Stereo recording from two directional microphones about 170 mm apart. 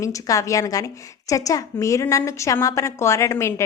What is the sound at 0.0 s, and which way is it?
A woman's voice, 20° left (ahead or behind).